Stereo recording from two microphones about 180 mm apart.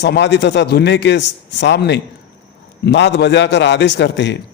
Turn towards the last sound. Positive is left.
turn(degrees=80)